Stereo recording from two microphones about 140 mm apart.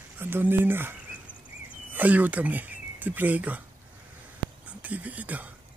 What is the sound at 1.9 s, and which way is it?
Speech, 10° right (ahead or behind).